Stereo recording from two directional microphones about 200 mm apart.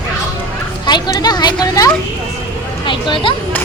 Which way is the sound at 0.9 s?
20° left (ahead or behind).